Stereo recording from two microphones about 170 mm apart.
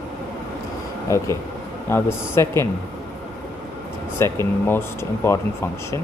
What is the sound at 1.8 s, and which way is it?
Speech, 15° left (ahead or behind).